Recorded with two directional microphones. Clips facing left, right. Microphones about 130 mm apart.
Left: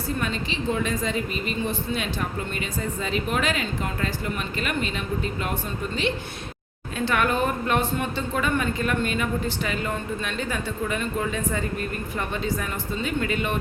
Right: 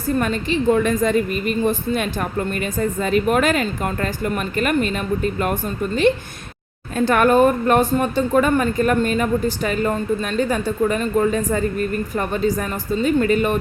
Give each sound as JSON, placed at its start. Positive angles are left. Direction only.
{"t": 0.2, "sound": "speech", "side_deg": -50}
{"t": 6.9, "sound": "speech", "side_deg": -45}